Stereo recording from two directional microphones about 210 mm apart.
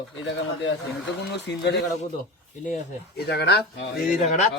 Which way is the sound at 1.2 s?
55° left (ahead or behind).